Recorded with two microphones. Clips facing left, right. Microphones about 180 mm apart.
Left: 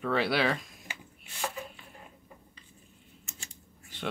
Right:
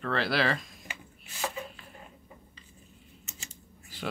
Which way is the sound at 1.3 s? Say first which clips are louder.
Right 1 dB; centre (ahead or behind).